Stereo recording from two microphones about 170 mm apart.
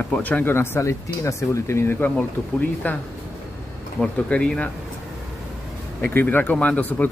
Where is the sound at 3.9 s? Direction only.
5° left (ahead or behind).